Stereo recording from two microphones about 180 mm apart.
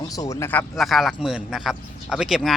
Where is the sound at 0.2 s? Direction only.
15° left (ahead or behind).